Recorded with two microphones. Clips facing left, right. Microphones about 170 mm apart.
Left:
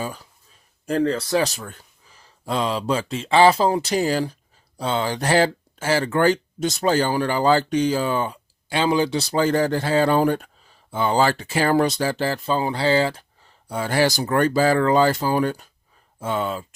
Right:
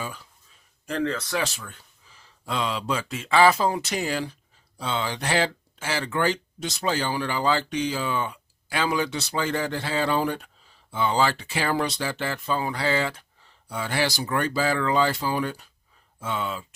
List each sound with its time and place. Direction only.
0.9 s speech: 40° left (ahead or behind)